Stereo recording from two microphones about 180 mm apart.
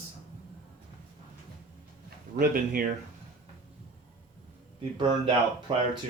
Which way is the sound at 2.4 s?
50° right (ahead or behind).